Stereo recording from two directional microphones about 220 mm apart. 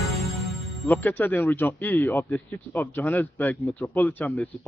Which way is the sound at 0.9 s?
10° left (ahead or behind).